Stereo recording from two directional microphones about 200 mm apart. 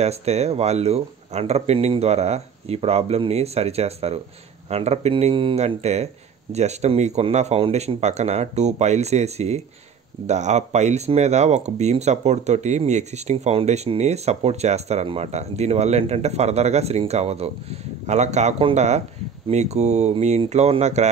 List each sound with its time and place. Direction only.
0.0 s speech: 30° right (ahead or behind)